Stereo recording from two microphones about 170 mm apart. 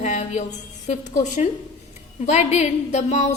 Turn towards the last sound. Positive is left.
turn(degrees=45)  # may be behind; listen again after turning